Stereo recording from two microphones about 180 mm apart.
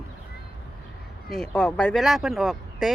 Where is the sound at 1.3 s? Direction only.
5° left (ahead or behind).